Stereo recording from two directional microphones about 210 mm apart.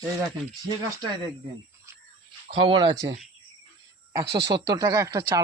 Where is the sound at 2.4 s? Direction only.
25° right (ahead or behind).